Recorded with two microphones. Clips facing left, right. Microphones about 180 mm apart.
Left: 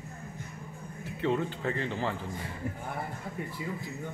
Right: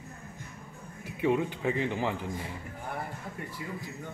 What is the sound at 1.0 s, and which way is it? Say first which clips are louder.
A man's voice: right 2 dB; 15° right (ahead or behind).